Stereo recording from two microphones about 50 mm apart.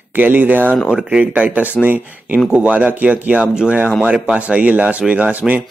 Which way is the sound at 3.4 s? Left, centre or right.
Centre.